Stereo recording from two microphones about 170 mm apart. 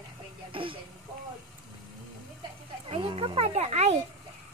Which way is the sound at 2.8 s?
35° right (ahead or behind).